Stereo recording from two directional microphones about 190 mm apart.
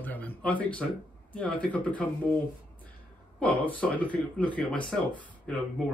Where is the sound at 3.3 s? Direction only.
10° left (ahead or behind).